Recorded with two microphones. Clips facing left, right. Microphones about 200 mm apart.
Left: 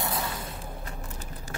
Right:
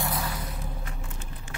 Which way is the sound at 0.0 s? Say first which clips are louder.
Right 1 dB; 25° left (ahead or behind).